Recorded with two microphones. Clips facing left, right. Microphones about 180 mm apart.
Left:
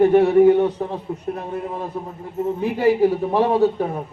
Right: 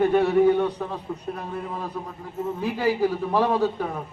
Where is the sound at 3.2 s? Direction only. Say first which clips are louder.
Left 5 dB; 20° left (ahead or behind).